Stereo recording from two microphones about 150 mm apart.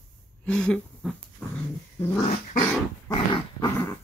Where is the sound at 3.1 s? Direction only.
30° left (ahead or behind).